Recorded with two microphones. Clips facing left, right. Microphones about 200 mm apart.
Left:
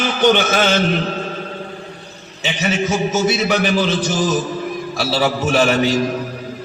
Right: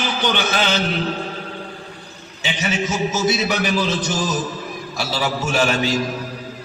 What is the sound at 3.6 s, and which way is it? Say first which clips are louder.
Speech: left 3 dB; 30° left (ahead or behind).